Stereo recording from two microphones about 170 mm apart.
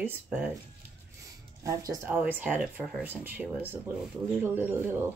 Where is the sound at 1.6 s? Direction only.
20° right (ahead or behind).